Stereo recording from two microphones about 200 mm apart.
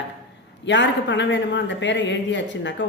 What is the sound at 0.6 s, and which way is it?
A man's voice, 60° left (ahead or behind).